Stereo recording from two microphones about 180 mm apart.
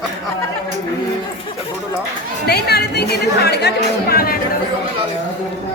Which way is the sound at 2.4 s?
65° left (ahead or behind).